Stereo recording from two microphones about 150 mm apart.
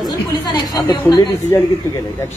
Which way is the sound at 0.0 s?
25° left (ahead or behind).